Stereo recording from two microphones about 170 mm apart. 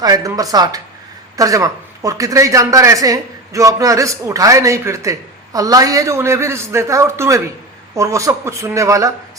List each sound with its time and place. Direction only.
0.0 s a man's voice: 20° right (ahead or behind)